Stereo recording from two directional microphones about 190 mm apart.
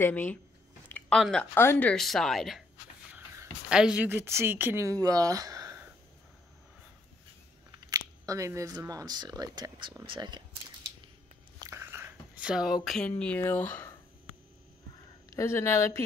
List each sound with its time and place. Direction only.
0.0 s speech: 10° left (ahead or behind)
0.8 s a sound: 10° left (ahead or behind)
1.2 s a woman's voice: 5° left (ahead or behind); by 5.9 s 15° right (ahead or behind)
7.9 s speech: 15° right (ahead or behind)
11.6 s a sound: 15° right (ahead or behind)
13.1 s speech: 10° left (ahead or behind)
15.2 s speech: 15° left (ahead or behind)